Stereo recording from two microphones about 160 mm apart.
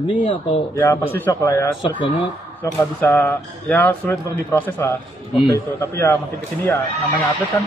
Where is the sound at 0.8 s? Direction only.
15° left (ahead or behind).